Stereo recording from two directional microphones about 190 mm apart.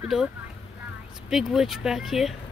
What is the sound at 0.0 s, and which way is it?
Speech, 5° right (ahead or behind).